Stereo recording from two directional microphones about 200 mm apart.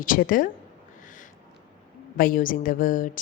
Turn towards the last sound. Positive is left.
turn(degrees=40)  # may be behind; listen again after turning